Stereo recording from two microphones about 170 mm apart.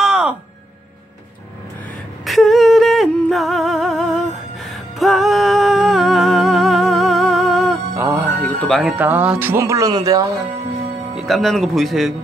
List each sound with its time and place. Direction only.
0.0 s music: 5° right (ahead or behind)
2.2 s humming: centre (ahead or behind)
4.6 s music: centre (ahead or behind)
7.9 s music: 15° right (ahead or behind)
8.5 s music: 5° left (ahead or behind)
8.9 s speech: 10° right (ahead or behind)
11.1 s speech: centre (ahead or behind)